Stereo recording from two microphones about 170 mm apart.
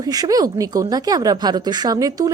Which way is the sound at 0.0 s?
20° right (ahead or behind).